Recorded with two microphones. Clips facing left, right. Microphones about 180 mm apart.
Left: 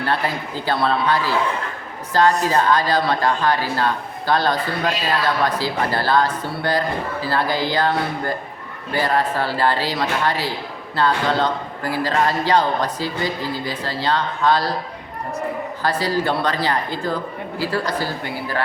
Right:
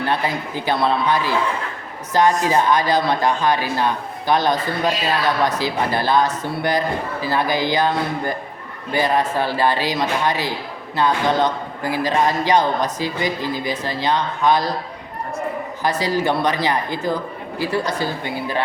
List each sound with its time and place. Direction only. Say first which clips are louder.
0.0 s speech: right 1 dB; 15° right (ahead or behind)
5.5 s speech: right 1 dB; 20° right (ahead or behind)
15.8 s speech: right 1 dB; 15° right (ahead or behind)